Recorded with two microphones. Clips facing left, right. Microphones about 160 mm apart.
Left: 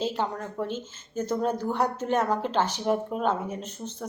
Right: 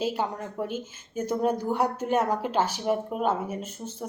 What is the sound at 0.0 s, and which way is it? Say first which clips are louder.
Speech: even; 10° right (ahead or behind).